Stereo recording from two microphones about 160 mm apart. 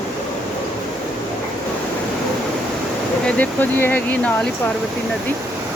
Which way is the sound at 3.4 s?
10° left (ahead or behind).